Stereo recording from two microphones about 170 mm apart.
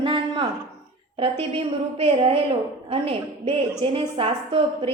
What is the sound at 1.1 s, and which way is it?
A woman's voice, 35° right (ahead or behind).